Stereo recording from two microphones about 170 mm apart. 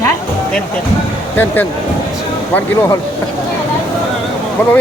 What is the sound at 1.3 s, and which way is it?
Speech, 10° left (ahead or behind).